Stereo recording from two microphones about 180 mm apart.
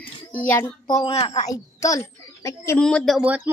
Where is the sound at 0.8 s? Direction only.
25° left (ahead or behind).